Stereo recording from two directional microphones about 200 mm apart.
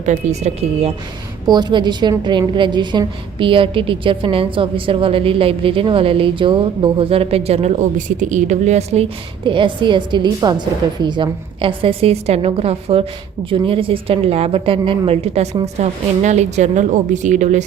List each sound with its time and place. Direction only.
0.0 s a woman's voice: 35° right (ahead or behind)
1.5 s a woman's voice: 20° right (ahead or behind); by 17.6 s 35° right (ahead or behind)